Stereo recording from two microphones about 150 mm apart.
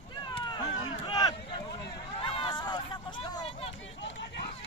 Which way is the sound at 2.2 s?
35° left (ahead or behind).